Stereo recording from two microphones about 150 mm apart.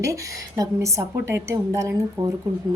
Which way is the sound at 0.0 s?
20° right (ahead or behind).